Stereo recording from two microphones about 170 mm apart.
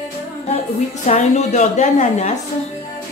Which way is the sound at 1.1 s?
40° left (ahead or behind).